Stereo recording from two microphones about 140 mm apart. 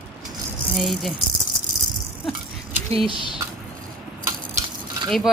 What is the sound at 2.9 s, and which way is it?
Speech, 40° right (ahead or behind).